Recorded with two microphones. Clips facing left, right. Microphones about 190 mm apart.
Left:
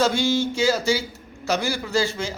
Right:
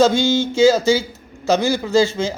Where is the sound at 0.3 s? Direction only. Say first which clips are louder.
Right 8 dB; 90° right.